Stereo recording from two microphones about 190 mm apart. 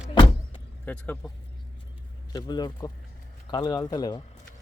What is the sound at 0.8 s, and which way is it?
Speech, 10° left (ahead or behind).